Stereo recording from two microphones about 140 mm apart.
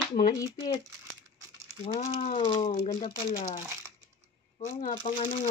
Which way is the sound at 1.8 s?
45° left (ahead or behind).